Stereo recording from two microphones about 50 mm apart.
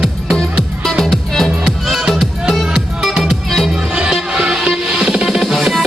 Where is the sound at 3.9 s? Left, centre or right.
Right.